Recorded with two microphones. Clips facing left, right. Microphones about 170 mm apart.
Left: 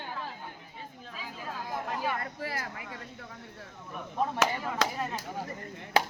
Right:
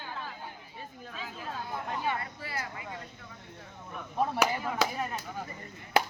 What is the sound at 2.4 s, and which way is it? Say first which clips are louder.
Speech: left 2 dB; 45° left (ahead or behind).